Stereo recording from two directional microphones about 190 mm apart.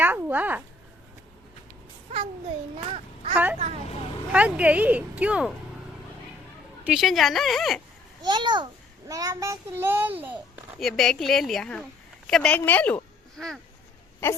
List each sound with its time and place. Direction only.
0.0 s a sound: 10° right (ahead or behind)
2.1 s a sound: 35° right (ahead or behind)
3.3 s speech: 10° right (ahead or behind)
6.8 s a woman's voice: centre (ahead or behind)
8.2 s a child's voice: 25° right (ahead or behind)
10.8 s a woman's voice: centre (ahead or behind)